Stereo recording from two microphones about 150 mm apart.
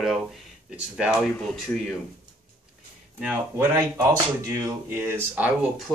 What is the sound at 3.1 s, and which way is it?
Speech, 5° right (ahead or behind).